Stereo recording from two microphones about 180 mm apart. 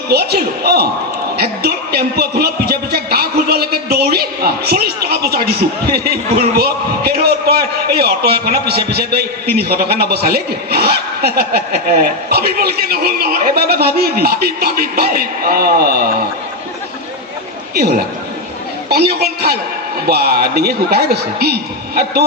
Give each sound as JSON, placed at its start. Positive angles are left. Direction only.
{"t": 0.1, "sound": "a man's voice", "side_deg": -60}
{"t": 18.9, "sound": "a man's voice", "side_deg": -60}